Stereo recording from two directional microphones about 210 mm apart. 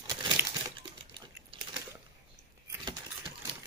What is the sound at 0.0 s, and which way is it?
Crumpling, 15° right (ahead or behind).